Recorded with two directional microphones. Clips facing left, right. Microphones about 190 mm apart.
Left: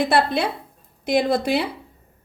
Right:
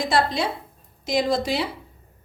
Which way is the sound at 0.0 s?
60° left (ahead or behind).